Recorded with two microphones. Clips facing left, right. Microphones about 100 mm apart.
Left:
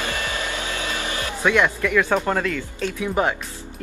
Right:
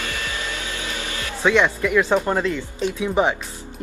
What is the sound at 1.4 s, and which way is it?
Speech, 20° right (ahead or behind).